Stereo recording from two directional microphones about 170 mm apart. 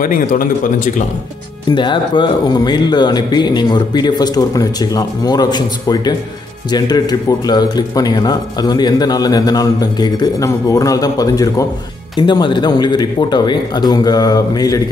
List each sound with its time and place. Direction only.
0.0 s speech: 55° left (ahead or behind)
1.8 s speech: 30° left (ahead or behind)